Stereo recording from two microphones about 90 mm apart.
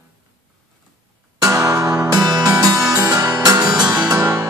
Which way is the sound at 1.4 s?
40° right (ahead or behind).